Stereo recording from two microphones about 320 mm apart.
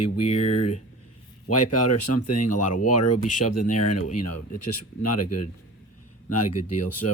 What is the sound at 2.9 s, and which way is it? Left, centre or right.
Speech, left.